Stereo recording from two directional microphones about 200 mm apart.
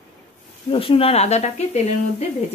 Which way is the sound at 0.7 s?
30° left (ahead or behind).